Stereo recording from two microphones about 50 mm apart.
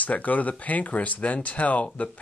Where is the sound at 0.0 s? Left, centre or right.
Left.